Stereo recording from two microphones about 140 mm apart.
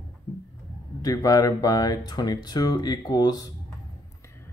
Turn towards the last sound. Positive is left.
turn(degrees=25)  # may be behind; listen again after turning